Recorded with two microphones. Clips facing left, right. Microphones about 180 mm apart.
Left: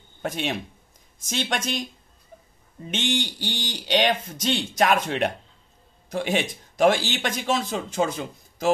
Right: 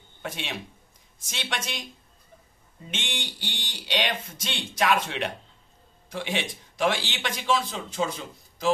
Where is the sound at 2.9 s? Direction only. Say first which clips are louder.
Left 9 dB; 40° left (ahead or behind).